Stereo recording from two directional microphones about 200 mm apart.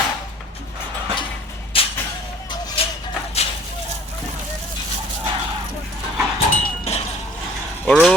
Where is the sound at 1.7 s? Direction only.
25° left (ahead or behind).